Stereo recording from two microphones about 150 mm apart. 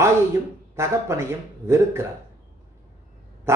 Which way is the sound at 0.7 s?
20° right (ahead or behind).